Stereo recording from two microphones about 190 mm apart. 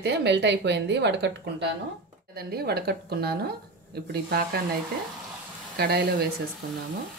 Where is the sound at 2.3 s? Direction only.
55° right (ahead or behind).